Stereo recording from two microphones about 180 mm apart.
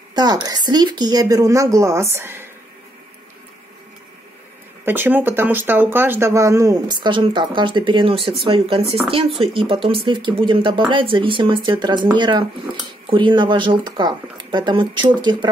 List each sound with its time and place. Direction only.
0.1 s speech: 25° right (ahead or behind)
4.8 s speech: 10° right (ahead or behind)